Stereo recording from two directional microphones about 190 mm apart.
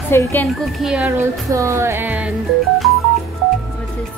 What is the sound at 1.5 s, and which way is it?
Music, 15° right (ahead or behind).